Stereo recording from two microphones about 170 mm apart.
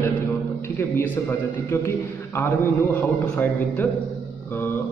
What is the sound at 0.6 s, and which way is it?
A man's voice, 15° left (ahead or behind).